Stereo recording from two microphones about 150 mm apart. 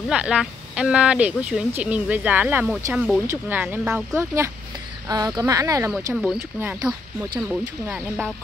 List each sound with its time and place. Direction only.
0.1 s speech: 5° right (ahead or behind); by 5.9 s 20° right (ahead or behind)
6.1 s speech: centre (ahead or behind)